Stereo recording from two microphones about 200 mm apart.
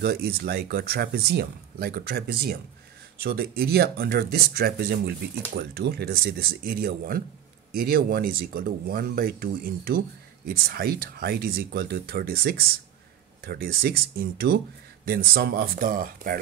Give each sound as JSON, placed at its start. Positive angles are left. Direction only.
{"t": 0.0, "sound": "speech", "side_deg": -50}